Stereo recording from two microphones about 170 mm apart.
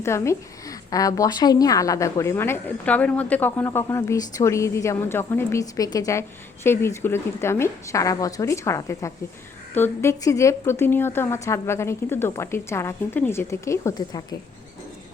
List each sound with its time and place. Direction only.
0.0 s a woman's voice: 15° left (ahead or behind)